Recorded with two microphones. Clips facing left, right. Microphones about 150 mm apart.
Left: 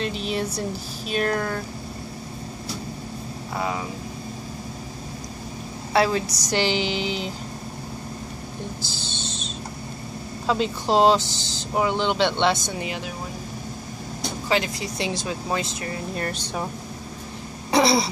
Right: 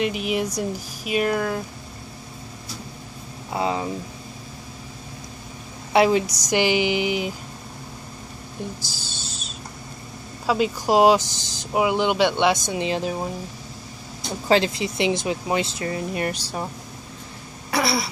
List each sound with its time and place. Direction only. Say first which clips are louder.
0.0 s speech: right 3 dB; 10° right (ahead or behind)
3.5 s speech: right 4 dB; 25° right (ahead or behind)
5.9 s speech: right 3 dB; 20° right (ahead or behind)
9.0 s owl: left 5 dB; 10° right (ahead or behind)
10.4 s speech: right 2 dB; 10° right (ahead or behind); by 13.1 s 30° right (ahead or behind)
14.5 s speech: right 5 dB; 25° right (ahead or behind)
16.2 s speech: right 2 dB; 10° right (ahead or behind)
17.6 s a sound: left 4 dB; 25° left (ahead or behind)